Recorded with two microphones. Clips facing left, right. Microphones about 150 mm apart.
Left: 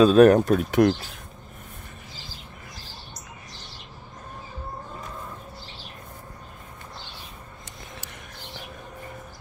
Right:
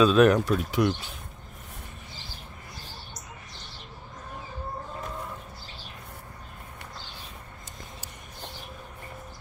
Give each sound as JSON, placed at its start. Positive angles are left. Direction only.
{"t": 0.0, "sound": "speech", "side_deg": 40}